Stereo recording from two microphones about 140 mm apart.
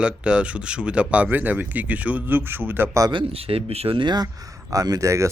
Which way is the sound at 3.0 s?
40° right (ahead or behind).